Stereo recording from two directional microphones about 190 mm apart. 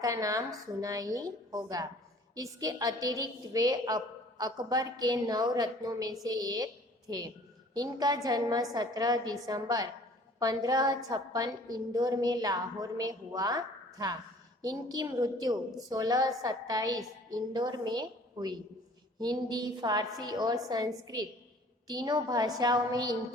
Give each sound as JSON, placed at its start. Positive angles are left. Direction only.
{"t": 0.0, "sound": "a woman's voice", "side_deg": -20}